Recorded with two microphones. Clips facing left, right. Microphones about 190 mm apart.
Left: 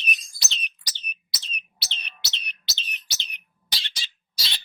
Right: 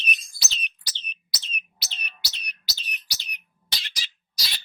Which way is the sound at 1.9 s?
25° left (ahead or behind).